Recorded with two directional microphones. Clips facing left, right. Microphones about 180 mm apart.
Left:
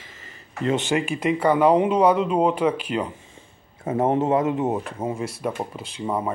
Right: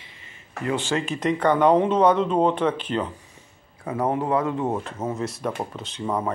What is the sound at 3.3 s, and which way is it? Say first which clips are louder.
Speech: left 3 dB; 25° left (ahead or behind).